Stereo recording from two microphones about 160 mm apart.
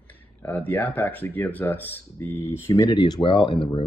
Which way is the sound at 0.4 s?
10° left (ahead or behind).